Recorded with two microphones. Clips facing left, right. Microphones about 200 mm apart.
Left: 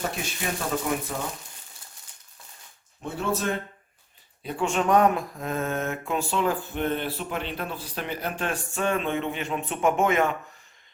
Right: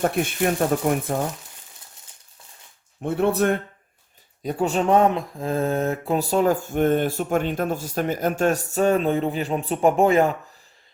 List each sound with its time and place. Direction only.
0.0 s speech: 55° right (ahead or behind)
3.0 s speech: 60° right (ahead or behind)
4.4 s mantra: 40° right (ahead or behind)